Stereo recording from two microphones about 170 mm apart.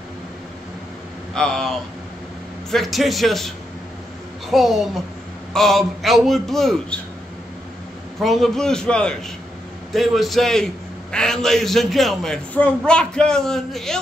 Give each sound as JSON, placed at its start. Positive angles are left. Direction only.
{"t": 1.3, "sound": "a man's voice", "side_deg": 5}
{"t": 2.7, "sound": "a man's voice", "side_deg": 0}
{"t": 8.2, "sound": "a man's voice", "side_deg": 0}